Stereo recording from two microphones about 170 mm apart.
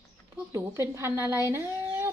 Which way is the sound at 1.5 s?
15° right (ahead or behind).